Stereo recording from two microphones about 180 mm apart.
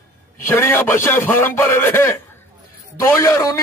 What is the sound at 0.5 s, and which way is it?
A man's voice, 15° left (ahead or behind).